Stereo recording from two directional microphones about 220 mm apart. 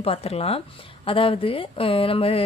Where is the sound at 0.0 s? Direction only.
25° left (ahead or behind).